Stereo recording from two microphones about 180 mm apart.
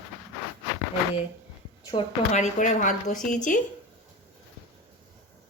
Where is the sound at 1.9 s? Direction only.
40° left (ahead or behind).